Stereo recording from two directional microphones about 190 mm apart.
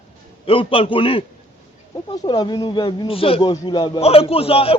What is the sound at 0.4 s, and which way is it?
Speech, 30° left (ahead or behind).